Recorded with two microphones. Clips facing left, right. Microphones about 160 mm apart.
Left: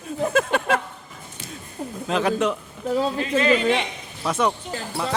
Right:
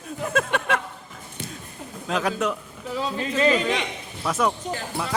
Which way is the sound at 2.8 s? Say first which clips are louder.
Left 6 dB; 40° left (ahead or behind).